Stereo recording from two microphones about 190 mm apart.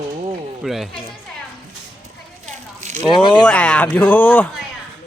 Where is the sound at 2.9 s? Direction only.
25° left (ahead or behind).